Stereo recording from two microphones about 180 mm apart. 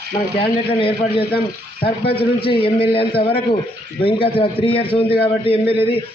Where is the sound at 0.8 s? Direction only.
30° left (ahead or behind).